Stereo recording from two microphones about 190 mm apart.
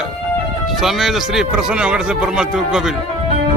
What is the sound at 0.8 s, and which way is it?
Speech, centre (ahead or behind).